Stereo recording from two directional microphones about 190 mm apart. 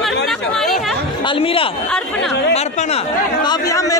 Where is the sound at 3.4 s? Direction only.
15° left (ahead or behind).